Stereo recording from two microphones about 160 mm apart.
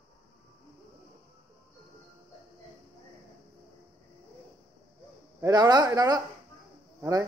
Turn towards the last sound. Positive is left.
turn(degrees=-20)  # may be behind; listen again after turning